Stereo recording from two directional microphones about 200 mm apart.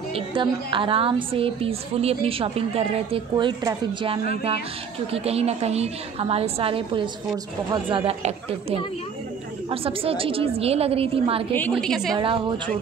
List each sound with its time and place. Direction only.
0.1 s a woman's voice: 25° right (ahead or behind)
11.7 s a woman's voice: centre (ahead or behind)
12.2 s a woman's voice: 25° right (ahead or behind)